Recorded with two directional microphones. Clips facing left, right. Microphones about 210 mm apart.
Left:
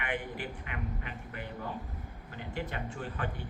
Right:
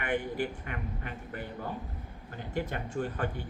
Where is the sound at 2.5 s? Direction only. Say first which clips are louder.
Right 4 dB; 45° right (ahead or behind).